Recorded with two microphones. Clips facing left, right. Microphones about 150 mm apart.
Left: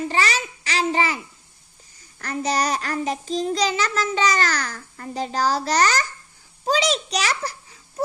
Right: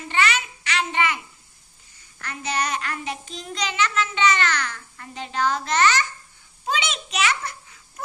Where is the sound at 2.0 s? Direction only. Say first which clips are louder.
Left 8 dB; 40° left (ahead or behind).